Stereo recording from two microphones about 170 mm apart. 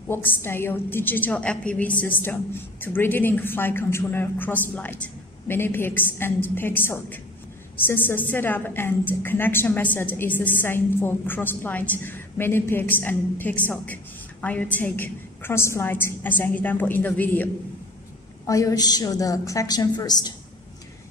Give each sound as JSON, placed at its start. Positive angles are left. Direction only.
{"t": 0.1, "sound": "a woman's voice", "side_deg": 10}